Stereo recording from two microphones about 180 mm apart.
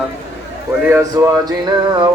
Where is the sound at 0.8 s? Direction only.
15° right (ahead or behind).